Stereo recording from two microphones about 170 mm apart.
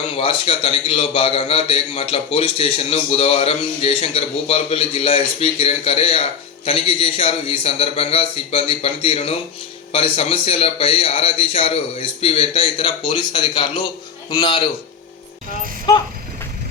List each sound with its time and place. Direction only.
0.2 s a man's voice: 30° left (ahead or behind)